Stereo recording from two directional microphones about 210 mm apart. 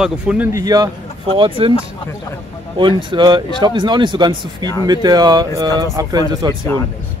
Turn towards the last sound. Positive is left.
turn(degrees=-20)  # may be behind; listen again after turning